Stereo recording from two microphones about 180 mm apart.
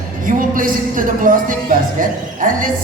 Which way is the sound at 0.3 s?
50° right (ahead or behind).